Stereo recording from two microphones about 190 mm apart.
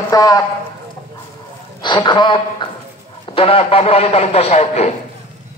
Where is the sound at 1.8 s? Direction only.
25° left (ahead or behind).